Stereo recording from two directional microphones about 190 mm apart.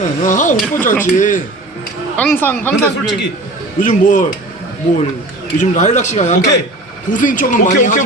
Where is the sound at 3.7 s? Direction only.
45° left (ahead or behind).